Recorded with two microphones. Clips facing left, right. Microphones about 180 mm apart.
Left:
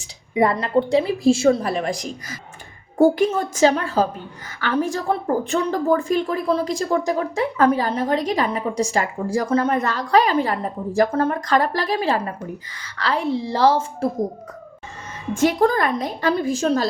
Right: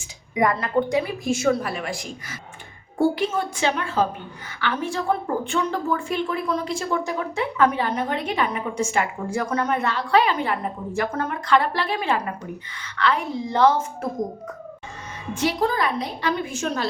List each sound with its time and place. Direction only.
0.0 s a sound: 30° left (ahead or behind)
0.5 s speech: 25° left (ahead or behind)
15.4 s a woman's voice: 45° left (ahead or behind)